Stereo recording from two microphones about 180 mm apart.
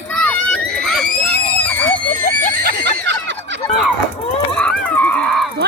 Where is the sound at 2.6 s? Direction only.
80° right.